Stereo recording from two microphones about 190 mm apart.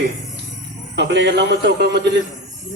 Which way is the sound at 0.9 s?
60° right (ahead or behind).